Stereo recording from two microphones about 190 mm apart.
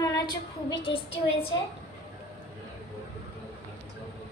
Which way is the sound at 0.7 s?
30° left (ahead or behind).